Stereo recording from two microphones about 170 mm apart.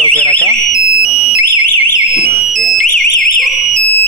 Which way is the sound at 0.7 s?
40° left (ahead or behind).